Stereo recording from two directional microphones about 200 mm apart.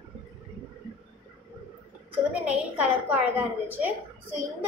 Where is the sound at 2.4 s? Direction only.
5° right (ahead or behind).